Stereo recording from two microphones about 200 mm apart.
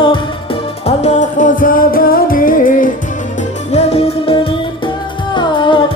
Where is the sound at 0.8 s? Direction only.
35° left (ahead or behind).